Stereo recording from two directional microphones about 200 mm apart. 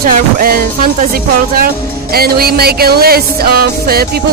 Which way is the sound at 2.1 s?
50° right (ahead or behind).